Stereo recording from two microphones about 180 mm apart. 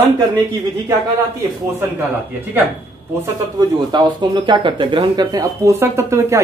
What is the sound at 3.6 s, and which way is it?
Speech, 25° right (ahead or behind).